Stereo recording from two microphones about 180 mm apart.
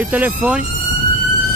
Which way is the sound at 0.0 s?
10° right (ahead or behind).